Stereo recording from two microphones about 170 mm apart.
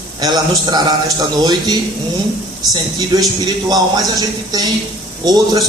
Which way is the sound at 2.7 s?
25° right (ahead or behind).